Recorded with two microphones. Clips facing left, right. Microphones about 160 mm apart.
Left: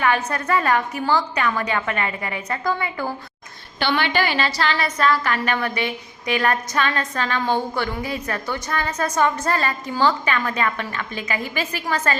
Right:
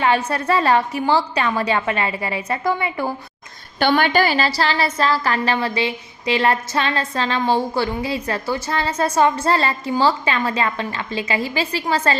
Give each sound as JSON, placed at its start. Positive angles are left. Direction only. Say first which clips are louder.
{"t": 0.0, "sound": "a woman's voice", "louder": "right 3 dB", "side_deg": -30}
{"t": 3.8, "sound": "a woman's voice", "louder": "right 5 dB", "side_deg": -45}